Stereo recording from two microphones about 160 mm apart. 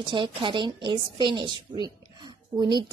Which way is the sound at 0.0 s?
30° right (ahead or behind).